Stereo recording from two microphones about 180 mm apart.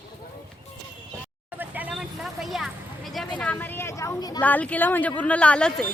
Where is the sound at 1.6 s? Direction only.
10° right (ahead or behind).